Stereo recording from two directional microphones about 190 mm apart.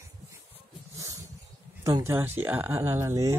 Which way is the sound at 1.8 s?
15° right (ahead or behind).